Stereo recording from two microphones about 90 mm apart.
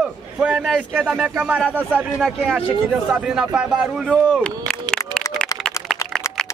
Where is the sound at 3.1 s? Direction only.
10° right (ahead or behind).